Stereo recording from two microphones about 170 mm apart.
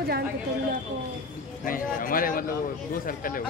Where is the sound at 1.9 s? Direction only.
55° left (ahead or behind).